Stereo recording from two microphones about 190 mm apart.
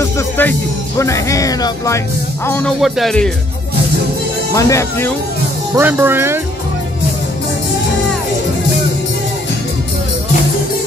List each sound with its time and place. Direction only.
0.0 s speech: 10° left (ahead or behind)
2.8 s speech: centre (ahead or behind)
4.6 s speech: 15° left (ahead or behind)
5.8 s speech: 10° right (ahead or behind)